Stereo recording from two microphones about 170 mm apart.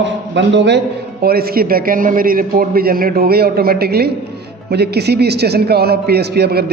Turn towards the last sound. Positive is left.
turn(degrees=-70)  # may be behind; listen again after turning